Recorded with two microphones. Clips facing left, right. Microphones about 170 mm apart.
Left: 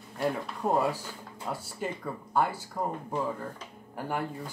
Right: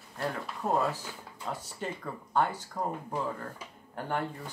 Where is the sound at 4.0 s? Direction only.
5° left (ahead or behind).